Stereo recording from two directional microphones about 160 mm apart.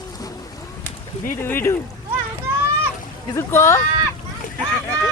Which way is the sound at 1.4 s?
15° left (ahead or behind).